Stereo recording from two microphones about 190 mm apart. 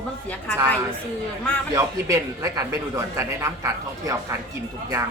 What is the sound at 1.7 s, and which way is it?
A man's voice, 15° right (ahead or behind).